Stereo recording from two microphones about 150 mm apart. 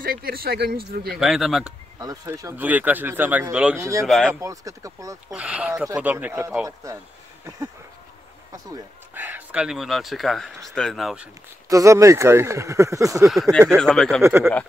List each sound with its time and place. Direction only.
0.0 s speech: 80° right
1.2 s speech: centre (ahead or behind)
2.0 s speech: 20° right (ahead or behind)
4.0 s speech: centre (ahead or behind)
4.4 s speech: 20° right (ahead or behind)
5.3 s speech: 5° right (ahead or behind)
9.1 s speech: 10° right (ahead or behind)
11.7 s speech: 20° right (ahead or behind)
13.3 s speech: centre (ahead or behind)
14.2 s speech: 15° right (ahead or behind)